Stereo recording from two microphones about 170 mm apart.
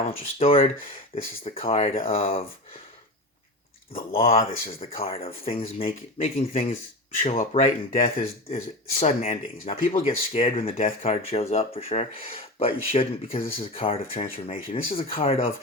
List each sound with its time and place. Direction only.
0.0 s speech: 35° left (ahead or behind)
4.1 s speech: 35° left (ahead or behind)
13.4 s speech: 55° left (ahead or behind)
13.7 s speech: 35° left (ahead or behind)